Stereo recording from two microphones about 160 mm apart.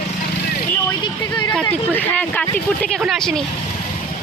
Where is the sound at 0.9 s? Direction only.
25° left (ahead or behind).